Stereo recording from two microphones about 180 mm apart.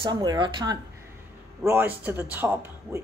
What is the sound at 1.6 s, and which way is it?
Speech, 10° right (ahead or behind).